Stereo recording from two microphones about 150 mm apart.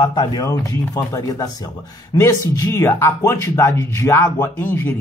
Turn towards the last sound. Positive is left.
turn(degrees=15)  # may be behind; listen again after turning